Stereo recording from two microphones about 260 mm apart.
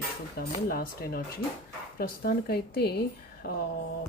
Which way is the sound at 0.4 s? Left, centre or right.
Left.